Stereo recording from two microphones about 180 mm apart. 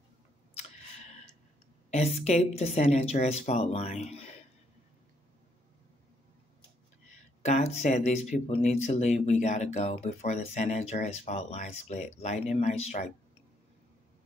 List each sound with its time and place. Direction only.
1.9 s speech: 40° left (ahead or behind)
7.4 s speech: 40° left (ahead or behind)